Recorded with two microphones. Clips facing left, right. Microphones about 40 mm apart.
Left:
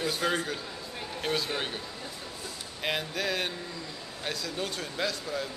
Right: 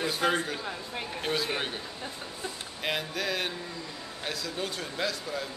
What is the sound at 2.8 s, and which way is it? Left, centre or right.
Speech, centre.